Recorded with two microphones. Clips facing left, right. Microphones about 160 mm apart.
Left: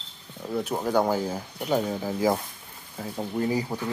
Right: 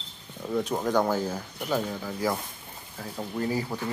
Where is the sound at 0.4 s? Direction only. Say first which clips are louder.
Even; 5° left (ahead or behind).